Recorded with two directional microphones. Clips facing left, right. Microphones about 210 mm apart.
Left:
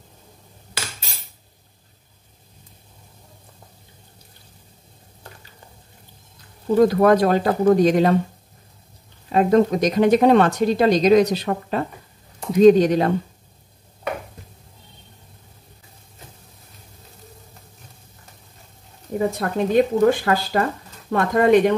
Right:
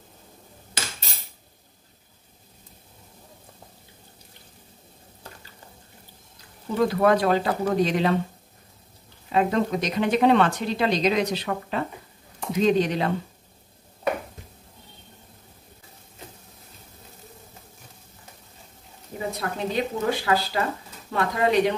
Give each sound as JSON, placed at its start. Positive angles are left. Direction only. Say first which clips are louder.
{"t": 6.8, "sound": "speech", "louder": "left 5 dB", "side_deg": 45}
{"t": 9.3, "sound": "speech", "louder": "left 6 dB", "side_deg": 40}
{"t": 19.1, "sound": "speech", "louder": "left 8 dB", "side_deg": 50}